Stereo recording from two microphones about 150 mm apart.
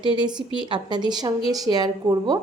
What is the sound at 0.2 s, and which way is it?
A woman's voice, 30° right (ahead or behind).